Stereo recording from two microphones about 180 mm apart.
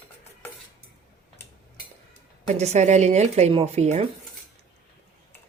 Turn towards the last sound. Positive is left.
turn(degrees=-35)  # may be behind; listen again after turning